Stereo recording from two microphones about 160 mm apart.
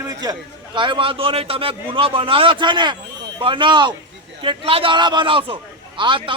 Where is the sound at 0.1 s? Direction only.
25° right (ahead or behind).